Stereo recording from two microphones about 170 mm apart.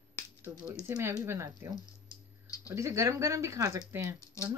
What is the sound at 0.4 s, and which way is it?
Speech, 15° right (ahead or behind).